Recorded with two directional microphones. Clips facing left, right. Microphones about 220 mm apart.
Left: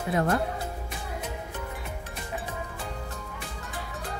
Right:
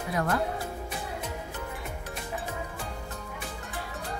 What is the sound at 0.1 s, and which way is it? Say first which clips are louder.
Speech: left 3 dB; 30° left (ahead or behind).